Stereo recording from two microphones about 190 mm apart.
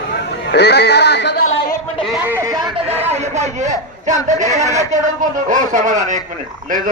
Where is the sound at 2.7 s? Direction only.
35° right (ahead or behind).